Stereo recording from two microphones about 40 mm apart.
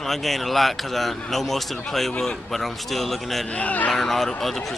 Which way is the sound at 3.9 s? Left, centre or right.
Centre.